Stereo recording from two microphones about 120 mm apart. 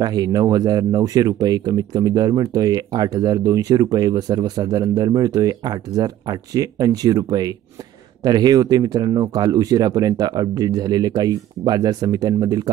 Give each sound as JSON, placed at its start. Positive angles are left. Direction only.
{"t": 0.0, "sound": "speech", "side_deg": -35}